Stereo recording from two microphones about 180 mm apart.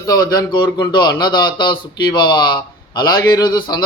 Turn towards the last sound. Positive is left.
turn(degrees=25)  # may be behind; listen again after turning